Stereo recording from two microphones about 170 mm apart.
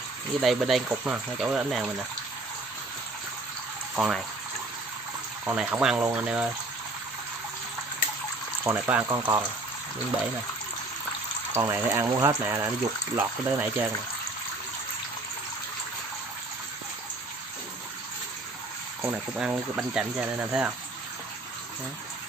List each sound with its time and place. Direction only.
0.4 s speech: centre (ahead or behind)
3.9 s speech: centre (ahead or behind)
5.4 s speech: 10° right (ahead or behind)
8.6 s speech: 15° right (ahead or behind)
11.5 s speech: 15° right (ahead or behind)
18.9 s speech: 10° right (ahead or behind)